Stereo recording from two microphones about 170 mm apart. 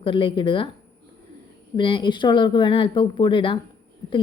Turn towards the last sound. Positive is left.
turn(degrees=30)  # may be behind; listen again after turning